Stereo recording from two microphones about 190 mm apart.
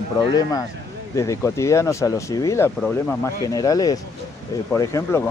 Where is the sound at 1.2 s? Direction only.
15° left (ahead or behind).